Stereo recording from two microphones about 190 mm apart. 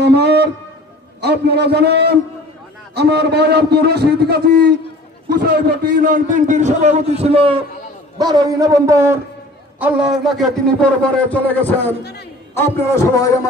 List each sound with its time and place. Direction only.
0.0 s a sound: 60° right (ahead or behind)
1.2 s a man's voice: 60° right (ahead or behind)
6.0 s a man's voice: 40° right (ahead or behind); by 11.9 s 10° left (ahead or behind)
12.0 s a man's voice: 60° left (ahead or behind)
12.5 s a man's voice: 15° left (ahead or behind)